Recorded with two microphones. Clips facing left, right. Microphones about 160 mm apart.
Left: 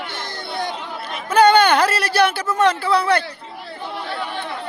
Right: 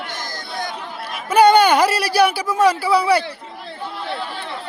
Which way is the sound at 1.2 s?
10° right (ahead or behind).